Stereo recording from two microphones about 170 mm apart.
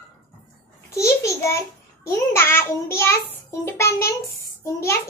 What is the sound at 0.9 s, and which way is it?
A child's voice, 20° left (ahead or behind).